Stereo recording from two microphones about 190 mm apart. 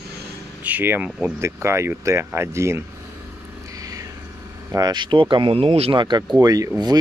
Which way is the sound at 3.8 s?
20° right (ahead or behind).